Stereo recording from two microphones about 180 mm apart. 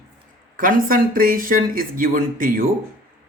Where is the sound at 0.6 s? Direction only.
50° right (ahead or behind).